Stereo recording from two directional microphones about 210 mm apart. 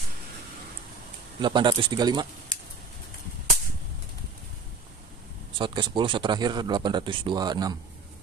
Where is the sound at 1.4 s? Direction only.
20° right (ahead or behind).